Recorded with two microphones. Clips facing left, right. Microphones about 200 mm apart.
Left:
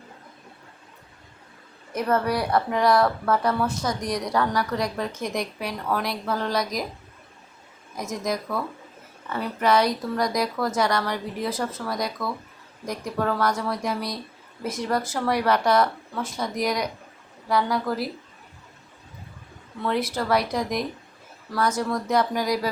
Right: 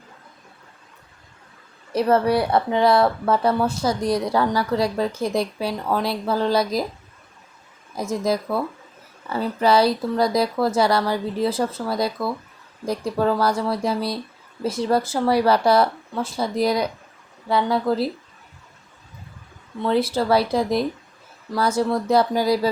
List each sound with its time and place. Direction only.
1.9 s speech: 30° right (ahead or behind)
7.9 s speech: 30° right (ahead or behind)
19.8 s speech: 30° right (ahead or behind)